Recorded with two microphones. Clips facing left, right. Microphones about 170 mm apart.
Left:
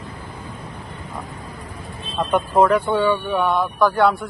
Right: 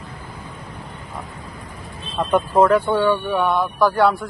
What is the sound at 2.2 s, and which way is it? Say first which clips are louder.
Speech: right 1 dB; centre (ahead or behind).